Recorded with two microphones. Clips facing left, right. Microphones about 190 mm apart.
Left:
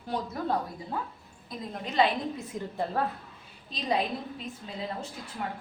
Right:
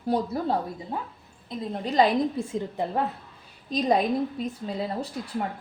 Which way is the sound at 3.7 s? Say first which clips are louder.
Right 7 dB; 45° right (ahead or behind).